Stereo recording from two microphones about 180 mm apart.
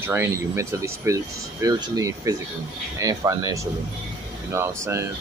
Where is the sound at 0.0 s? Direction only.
15° right (ahead or behind).